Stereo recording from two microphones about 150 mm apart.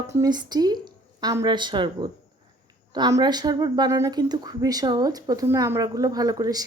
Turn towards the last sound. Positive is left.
turn(degrees=-25)  # may be behind; listen again after turning